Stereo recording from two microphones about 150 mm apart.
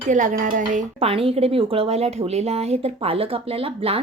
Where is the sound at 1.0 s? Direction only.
40° right (ahead or behind).